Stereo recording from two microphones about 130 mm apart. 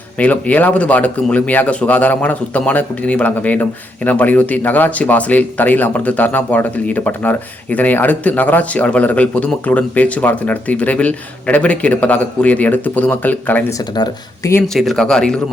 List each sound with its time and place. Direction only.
0.2 s speech: 10° left (ahead or behind)
13.7 s speech: 30° left (ahead or behind)
14.7 s speech: centre (ahead or behind)